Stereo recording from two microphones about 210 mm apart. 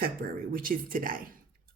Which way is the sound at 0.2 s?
50° right (ahead or behind).